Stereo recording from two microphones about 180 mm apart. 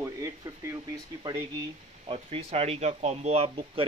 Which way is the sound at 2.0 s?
30° right (ahead or behind).